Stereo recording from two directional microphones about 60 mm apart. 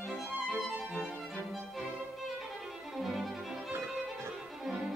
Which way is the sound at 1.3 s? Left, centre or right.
Centre.